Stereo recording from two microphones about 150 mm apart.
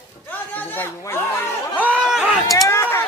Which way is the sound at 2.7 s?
15° left (ahead or behind).